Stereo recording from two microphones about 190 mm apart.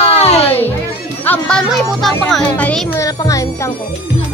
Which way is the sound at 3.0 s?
15° left (ahead or behind).